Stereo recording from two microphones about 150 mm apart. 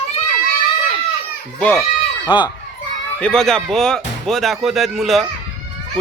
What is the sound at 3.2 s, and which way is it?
Speech, 5° left (ahead or behind).